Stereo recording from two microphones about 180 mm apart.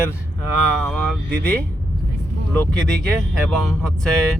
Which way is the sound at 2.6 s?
5° left (ahead or behind).